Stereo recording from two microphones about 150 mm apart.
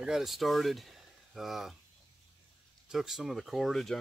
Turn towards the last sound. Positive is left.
turn(degrees=0)  # may be behind; listen again after turning